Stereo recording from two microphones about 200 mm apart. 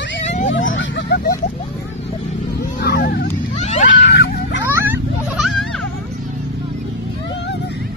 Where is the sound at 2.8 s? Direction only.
55° left (ahead or behind).